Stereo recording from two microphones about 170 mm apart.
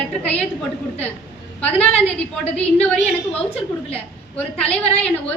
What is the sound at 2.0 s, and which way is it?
A woman's voice, 10° left (ahead or behind).